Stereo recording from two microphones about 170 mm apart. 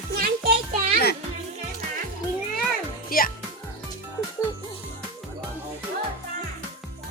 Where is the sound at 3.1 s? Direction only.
60° left (ahead or behind).